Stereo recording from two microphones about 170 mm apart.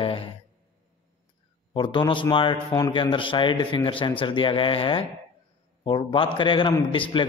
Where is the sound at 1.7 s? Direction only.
30° left (ahead or behind).